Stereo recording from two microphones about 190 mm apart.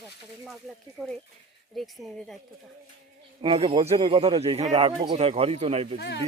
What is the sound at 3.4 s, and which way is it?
Speech, 30° right (ahead or behind).